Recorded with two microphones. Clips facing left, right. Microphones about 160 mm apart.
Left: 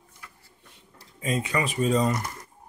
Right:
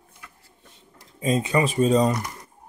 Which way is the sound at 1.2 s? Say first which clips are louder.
Right 5 dB; 25° right (ahead or behind).